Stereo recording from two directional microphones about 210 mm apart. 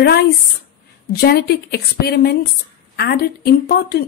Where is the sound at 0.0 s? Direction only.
50° left (ahead or behind).